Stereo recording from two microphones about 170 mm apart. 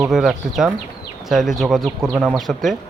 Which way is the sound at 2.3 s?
Centre (ahead or behind).